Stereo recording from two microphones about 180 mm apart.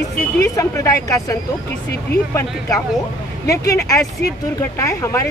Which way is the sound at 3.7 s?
20° left (ahead or behind).